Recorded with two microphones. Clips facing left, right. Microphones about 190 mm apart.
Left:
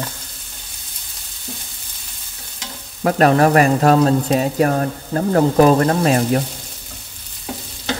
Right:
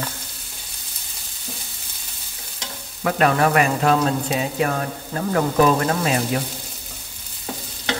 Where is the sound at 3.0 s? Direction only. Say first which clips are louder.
Left 5 dB; 35° left (ahead or behind).